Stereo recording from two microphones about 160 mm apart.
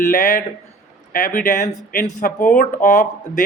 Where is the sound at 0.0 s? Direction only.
55° left (ahead or behind).